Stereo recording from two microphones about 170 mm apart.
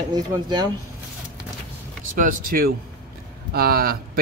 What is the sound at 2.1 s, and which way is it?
Speech, 55° right (ahead or behind).